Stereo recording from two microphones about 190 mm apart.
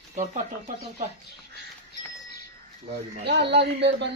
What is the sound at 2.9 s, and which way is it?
Speech, 60° right (ahead or behind).